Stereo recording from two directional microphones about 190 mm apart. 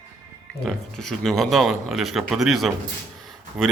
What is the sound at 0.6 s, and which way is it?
Speech, centre (ahead or behind).